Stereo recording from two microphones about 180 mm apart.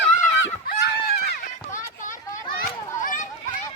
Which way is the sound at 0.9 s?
65° left (ahead or behind).